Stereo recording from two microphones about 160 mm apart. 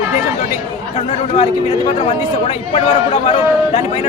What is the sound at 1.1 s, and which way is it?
A man's voice, 45° left (ahead or behind).